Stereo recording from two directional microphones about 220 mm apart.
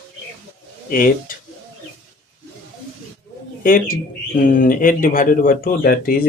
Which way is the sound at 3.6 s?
40° left (ahead or behind).